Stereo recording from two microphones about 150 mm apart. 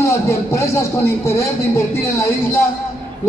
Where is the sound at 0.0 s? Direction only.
20° left (ahead or behind).